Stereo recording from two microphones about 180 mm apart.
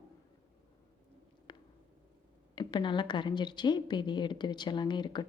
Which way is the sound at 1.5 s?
25° left (ahead or behind).